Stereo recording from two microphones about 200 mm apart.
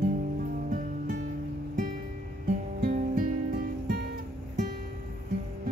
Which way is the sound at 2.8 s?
45° right (ahead or behind).